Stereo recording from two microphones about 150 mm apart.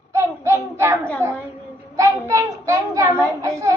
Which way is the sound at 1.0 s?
10° left (ahead or behind).